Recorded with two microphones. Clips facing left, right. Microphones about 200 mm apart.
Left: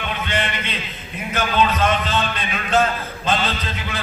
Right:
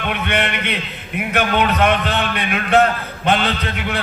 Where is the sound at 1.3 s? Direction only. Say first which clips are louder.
Right 2 dB; 65° right (ahead or behind).